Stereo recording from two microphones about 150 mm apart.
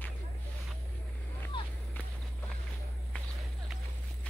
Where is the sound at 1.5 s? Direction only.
35° left (ahead or behind).